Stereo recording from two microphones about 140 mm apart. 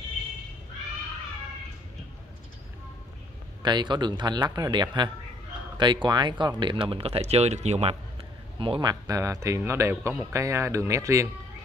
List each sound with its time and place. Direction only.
3.6 s speech: 30° right (ahead or behind); by 7.9 s 55° right (ahead or behind)
8.5 s speech: 35° right (ahead or behind)
9.0 s speech: 25° right (ahead or behind)